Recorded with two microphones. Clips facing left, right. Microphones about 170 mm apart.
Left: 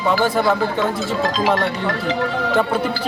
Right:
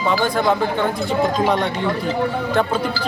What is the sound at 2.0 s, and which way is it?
Speech, 90° left.